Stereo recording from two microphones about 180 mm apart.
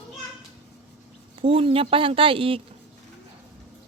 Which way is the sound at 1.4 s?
30° right (ahead or behind).